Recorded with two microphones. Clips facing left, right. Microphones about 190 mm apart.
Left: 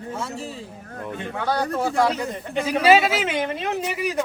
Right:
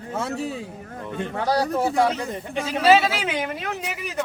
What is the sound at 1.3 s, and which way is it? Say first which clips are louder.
Speech: right 2 dB; 40° right (ahead or behind).